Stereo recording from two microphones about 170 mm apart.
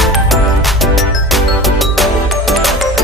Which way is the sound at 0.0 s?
Centre (ahead or behind).